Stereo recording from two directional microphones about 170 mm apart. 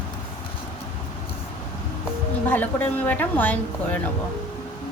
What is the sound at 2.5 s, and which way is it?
A woman's voice, 10° left (ahead or behind).